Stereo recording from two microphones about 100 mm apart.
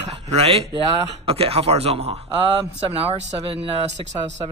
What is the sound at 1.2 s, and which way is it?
A man's voice, 75° right (ahead or behind).